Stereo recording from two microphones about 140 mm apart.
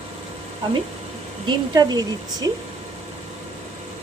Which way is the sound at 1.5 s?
30° right (ahead or behind).